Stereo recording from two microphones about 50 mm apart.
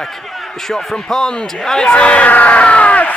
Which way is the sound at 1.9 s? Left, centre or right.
Left.